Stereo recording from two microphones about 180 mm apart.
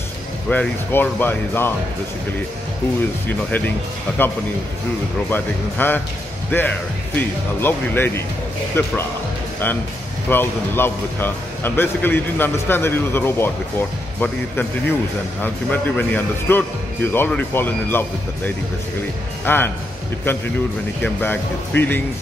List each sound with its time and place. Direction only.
0.5 s speech: 10° left (ahead or behind)
3.3 s speech: 10° left (ahead or behind)
5.3 s speech: 10° left (ahead or behind)
10.3 s speech: 10° left (ahead or behind)